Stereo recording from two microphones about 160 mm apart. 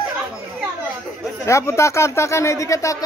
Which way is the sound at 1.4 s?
20° left (ahead or behind).